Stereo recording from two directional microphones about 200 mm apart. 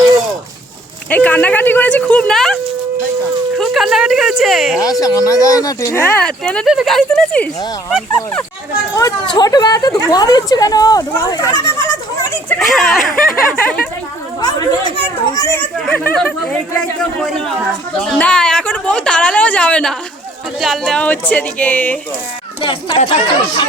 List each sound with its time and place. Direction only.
1.1 s speech: 10° left (ahead or behind)
3.6 s a woman's voice: centre (ahead or behind)
4.8 s a woman's voice: 20° left (ahead or behind); by 8.4 s 5° left (ahead or behind)
9.0 s speech: 20° left (ahead or behind)
11.8 s a sound: 15° left (ahead or behind)
12.5 s a woman's voice: centre (ahead or behind)
14.4 s speech: 20° left (ahead or behind)
15.4 s a woman's voice: 10° left (ahead or behind)
22.6 s speech: 25° left (ahead or behind)